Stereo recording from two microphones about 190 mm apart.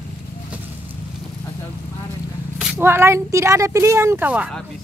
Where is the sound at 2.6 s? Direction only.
10° right (ahead or behind).